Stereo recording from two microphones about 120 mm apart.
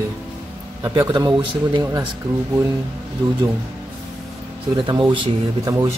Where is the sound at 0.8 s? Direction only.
35° right (ahead or behind).